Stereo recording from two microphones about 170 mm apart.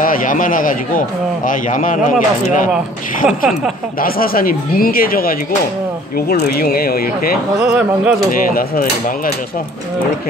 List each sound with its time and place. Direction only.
0.0 s a man's voice: 55° left (ahead or behind)
3.3 s speech: centre (ahead or behind)
4.0 s speech: 60° left (ahead or behind)
7.7 s speech: 5° right (ahead or behind)
8.3 s speech: 55° left (ahead or behind)